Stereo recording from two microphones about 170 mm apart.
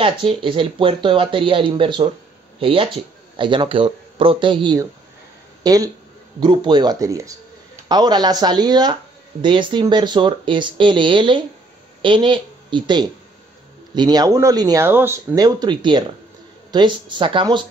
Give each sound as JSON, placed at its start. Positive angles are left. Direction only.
{"t": 0.0, "sound": "speech", "side_deg": -30}